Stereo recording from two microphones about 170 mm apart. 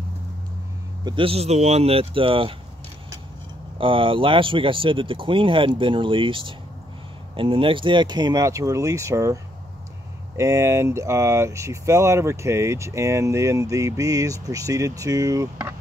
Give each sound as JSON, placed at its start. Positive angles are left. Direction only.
{"t": 1.0, "sound": "speech", "side_deg": -30}
{"t": 3.7, "sound": "speech", "side_deg": -30}